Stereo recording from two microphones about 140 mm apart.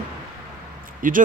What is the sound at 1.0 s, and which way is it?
Speech, 75° right (ahead or behind).